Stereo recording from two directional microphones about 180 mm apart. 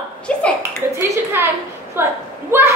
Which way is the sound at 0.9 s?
15° right (ahead or behind).